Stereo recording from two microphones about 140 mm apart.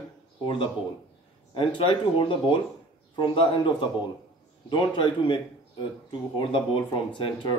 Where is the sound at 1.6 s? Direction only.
35° left (ahead or behind).